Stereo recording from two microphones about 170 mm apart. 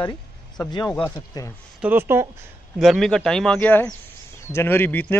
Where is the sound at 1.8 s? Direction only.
10° right (ahead or behind).